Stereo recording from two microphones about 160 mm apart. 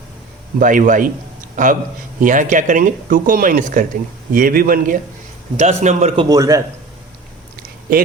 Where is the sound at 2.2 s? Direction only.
55° right (ahead or behind).